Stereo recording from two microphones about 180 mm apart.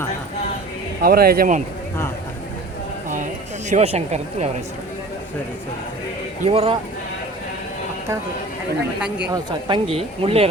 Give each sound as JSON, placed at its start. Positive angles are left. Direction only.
{"t": 1.0, "sound": "speech", "side_deg": -55}
{"t": 3.7, "sound": "speech", "side_deg": -35}
{"t": 6.4, "sound": "speech", "side_deg": -35}
{"t": 9.3, "sound": "speech", "side_deg": -25}